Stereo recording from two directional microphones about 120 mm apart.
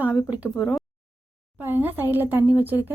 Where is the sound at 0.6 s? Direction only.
Centre (ahead or behind).